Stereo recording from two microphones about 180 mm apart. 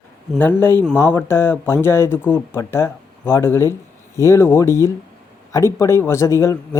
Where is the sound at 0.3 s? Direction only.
10° left (ahead or behind).